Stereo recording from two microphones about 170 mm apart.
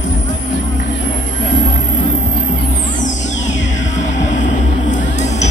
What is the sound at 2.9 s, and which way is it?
Music, 45° left (ahead or behind).